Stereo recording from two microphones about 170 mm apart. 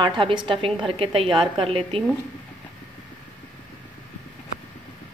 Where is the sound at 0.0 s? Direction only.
30° right (ahead or behind).